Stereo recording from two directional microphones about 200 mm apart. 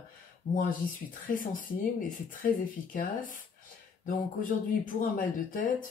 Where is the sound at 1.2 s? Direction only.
45° left (ahead or behind).